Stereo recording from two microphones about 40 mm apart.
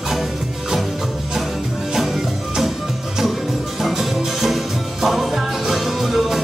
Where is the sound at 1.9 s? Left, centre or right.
Centre.